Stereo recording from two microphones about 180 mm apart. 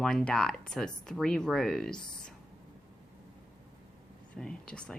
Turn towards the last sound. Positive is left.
turn(degrees=5)  # may be behind; listen again after turning